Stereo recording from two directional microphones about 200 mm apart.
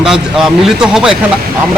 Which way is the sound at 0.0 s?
Centre (ahead or behind).